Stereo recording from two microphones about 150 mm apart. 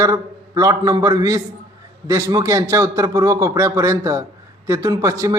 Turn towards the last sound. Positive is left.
turn(degrees=-20)  # may be behind; listen again after turning